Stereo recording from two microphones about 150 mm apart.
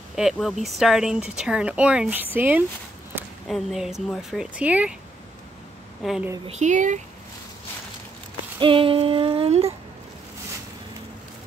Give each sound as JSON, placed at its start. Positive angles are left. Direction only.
{"t": 0.1, "sound": "speech", "side_deg": 0}
{"t": 3.4, "sound": "speech", "side_deg": 0}
{"t": 6.0, "sound": "speech", "side_deg": 0}
{"t": 6.6, "sound": "speech", "side_deg": -55}
{"t": 8.5, "sound": "child singing", "side_deg": -35}